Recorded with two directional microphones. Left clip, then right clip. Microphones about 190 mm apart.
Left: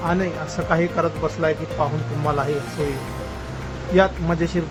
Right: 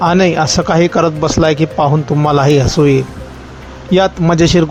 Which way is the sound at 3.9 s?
55° right (ahead or behind).